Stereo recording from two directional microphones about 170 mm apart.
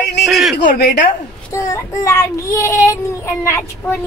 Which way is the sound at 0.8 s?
60° left (ahead or behind).